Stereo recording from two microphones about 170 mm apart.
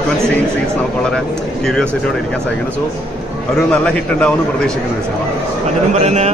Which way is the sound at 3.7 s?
5° left (ahead or behind).